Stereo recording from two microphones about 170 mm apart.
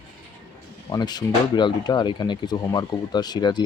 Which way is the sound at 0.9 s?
25° left (ahead or behind).